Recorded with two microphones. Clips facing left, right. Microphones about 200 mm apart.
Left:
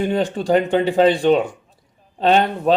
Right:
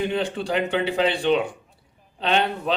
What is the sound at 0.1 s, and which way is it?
A man's voice, 40° left (ahead or behind).